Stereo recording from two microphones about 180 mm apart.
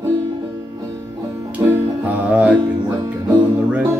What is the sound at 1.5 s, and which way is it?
Music, 10° right (ahead or behind).